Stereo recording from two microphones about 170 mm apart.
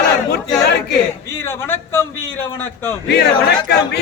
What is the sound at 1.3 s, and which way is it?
Speech, 15° left (ahead or behind).